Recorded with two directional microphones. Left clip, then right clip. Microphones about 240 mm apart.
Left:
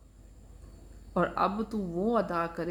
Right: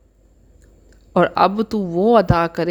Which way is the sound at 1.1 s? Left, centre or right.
Right.